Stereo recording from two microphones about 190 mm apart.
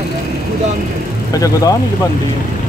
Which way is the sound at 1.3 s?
15° left (ahead or behind).